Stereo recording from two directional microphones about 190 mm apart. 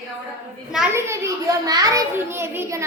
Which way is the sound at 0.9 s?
15° right (ahead or behind).